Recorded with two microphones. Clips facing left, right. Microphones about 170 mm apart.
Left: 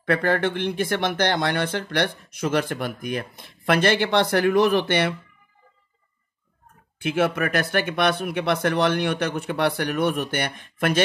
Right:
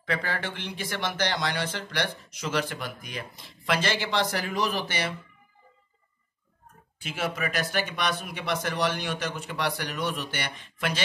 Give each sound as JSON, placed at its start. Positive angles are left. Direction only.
{"t": 0.0, "sound": "speech", "side_deg": 55}
{"t": 7.0, "sound": "speech", "side_deg": 60}